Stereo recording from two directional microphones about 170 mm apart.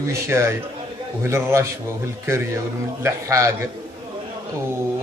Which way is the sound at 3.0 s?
15° right (ahead or behind).